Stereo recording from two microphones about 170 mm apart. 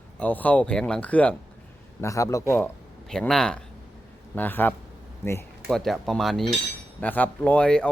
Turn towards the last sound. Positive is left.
turn(degrees=5)  # may be behind; listen again after turning